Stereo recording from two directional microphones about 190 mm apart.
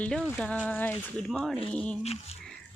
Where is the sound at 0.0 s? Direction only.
5° left (ahead or behind).